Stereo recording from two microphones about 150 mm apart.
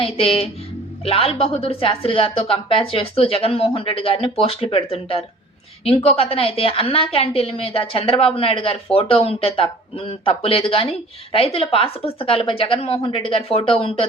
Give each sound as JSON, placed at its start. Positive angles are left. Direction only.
{"t": 0.0, "sound": "a woman's voice", "side_deg": 40}